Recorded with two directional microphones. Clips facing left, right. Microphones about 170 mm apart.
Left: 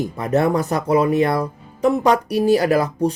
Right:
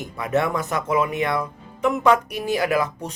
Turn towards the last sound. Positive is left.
turn(degrees=35)  # may be behind; listen again after turning